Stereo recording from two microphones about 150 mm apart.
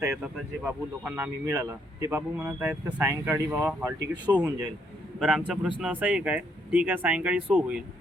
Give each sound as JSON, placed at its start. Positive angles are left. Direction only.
{"t": 0.0, "sound": "speech", "side_deg": -5}
{"t": 1.0, "sound": "speech", "side_deg": -15}